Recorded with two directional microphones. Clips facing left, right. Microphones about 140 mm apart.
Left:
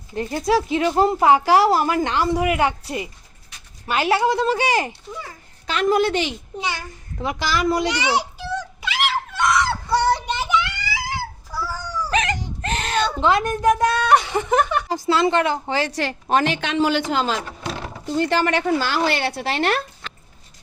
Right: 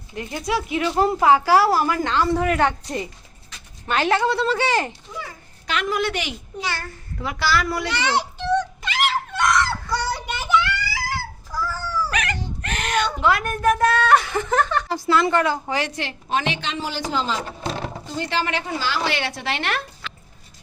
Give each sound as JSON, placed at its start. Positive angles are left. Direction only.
{"t": 0.1, "sound": "a woman's voice", "side_deg": 35}
{"t": 5.6, "sound": "speech", "side_deg": 35}
{"t": 6.7, "sound": "a sound", "side_deg": 15}
{"t": 9.9, "sound": "child singing", "side_deg": 25}
{"t": 11.6, "sound": "a sound", "side_deg": 15}
{"t": 15.0, "sound": "speech", "side_deg": 25}
{"t": 16.0, "sound": "a woman's voice", "side_deg": 45}
{"t": 17.4, "sound": "a sound", "side_deg": -30}
{"t": 18.2, "sound": "speech", "side_deg": 50}